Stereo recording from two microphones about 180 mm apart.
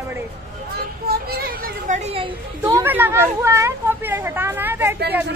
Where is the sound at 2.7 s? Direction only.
10° right (ahead or behind).